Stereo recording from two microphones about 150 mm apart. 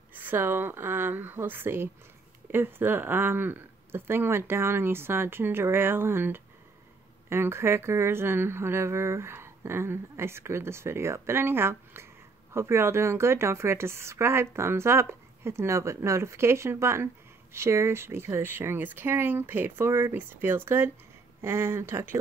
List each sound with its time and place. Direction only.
0.1 s a woman's voice: 15° right (ahead or behind)